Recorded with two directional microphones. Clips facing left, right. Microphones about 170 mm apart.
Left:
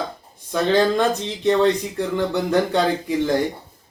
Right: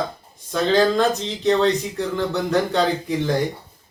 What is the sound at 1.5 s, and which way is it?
A man's voice, 10° left (ahead or behind).